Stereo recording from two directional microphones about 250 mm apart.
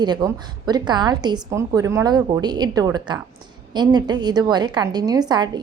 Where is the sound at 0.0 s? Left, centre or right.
Centre.